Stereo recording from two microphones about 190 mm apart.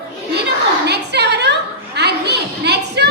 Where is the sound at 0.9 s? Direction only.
60° right (ahead or behind).